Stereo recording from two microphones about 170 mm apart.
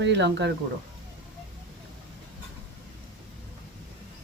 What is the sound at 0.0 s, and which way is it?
Speech, 90° right.